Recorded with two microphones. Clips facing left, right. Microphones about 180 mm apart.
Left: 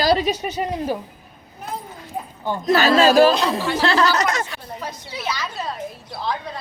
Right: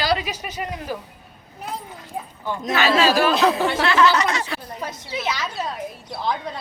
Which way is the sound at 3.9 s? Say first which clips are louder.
Even; 35° left (ahead or behind).